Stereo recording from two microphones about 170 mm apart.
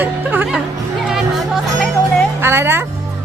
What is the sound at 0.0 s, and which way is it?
Music, 10° right (ahead or behind).